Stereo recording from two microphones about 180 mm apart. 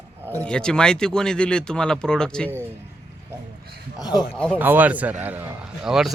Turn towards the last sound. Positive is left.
turn(degrees=-5)  # may be behind; listen again after turning